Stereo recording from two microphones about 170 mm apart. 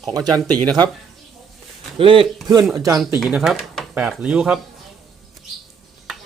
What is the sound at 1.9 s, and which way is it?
Speech, 30° right (ahead or behind).